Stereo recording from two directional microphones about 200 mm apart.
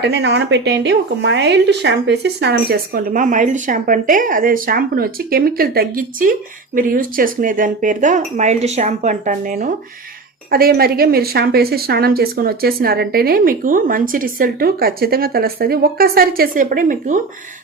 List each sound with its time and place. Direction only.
0.0 s a woman's voice: 60° right (ahead or behind); by 17.2 s 40° right (ahead or behind)